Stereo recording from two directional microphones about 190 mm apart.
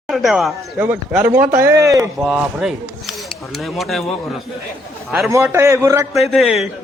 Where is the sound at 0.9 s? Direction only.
10° right (ahead or behind).